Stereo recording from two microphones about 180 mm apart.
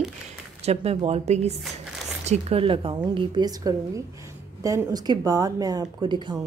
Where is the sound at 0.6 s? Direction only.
35° right (ahead or behind).